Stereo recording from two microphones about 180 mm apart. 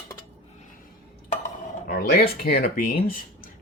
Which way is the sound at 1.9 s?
55° left (ahead or behind).